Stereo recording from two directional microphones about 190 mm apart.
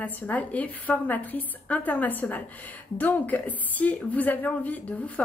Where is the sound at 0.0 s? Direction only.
10° left (ahead or behind).